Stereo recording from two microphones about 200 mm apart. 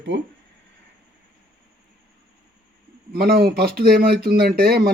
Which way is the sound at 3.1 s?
50° right (ahead or behind).